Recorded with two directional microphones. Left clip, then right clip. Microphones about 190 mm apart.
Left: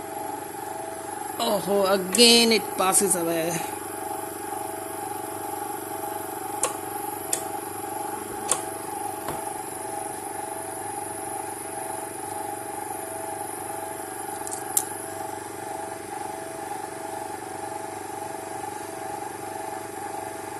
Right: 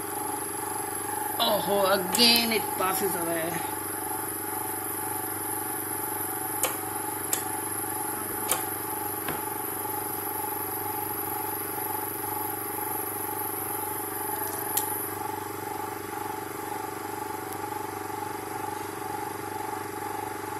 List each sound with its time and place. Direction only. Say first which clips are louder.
1.4 s speech: left 1 dB; 40° left (ahead or behind); by 3.6 s 55° left (ahead or behind)